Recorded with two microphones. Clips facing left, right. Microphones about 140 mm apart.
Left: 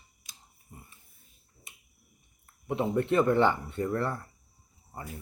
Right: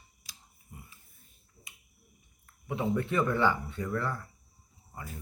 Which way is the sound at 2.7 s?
45° left (ahead or behind).